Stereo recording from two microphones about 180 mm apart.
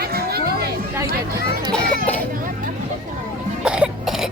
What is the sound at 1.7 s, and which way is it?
Children playing, 10° left (ahead or behind).